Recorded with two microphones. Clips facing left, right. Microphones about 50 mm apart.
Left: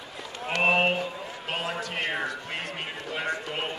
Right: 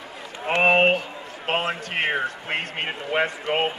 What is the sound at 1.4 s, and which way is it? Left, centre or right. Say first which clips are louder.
A man's voice: right 7 dB; right.